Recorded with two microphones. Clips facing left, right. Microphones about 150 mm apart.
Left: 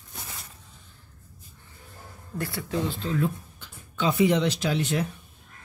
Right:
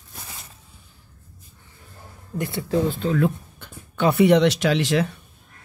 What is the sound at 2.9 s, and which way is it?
Speech, 60° right (ahead or behind).